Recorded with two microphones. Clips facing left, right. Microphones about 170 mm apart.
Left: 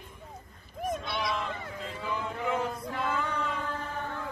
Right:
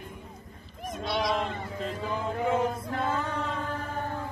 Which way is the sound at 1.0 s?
55° right (ahead or behind).